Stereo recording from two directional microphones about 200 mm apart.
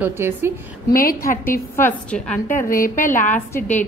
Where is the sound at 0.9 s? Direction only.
45° left (ahead or behind).